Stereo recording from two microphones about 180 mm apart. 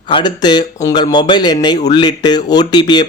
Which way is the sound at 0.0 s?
25° left (ahead or behind).